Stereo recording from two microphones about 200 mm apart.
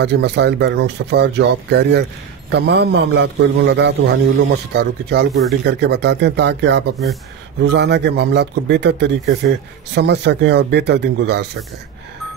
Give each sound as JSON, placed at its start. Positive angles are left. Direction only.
{"t": 0.0, "sound": "a man's voice", "side_deg": -55}